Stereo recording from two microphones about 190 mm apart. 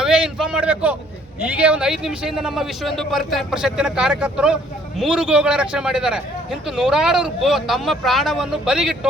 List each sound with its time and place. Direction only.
0.0 s a man's voice: 5° right (ahead or behind)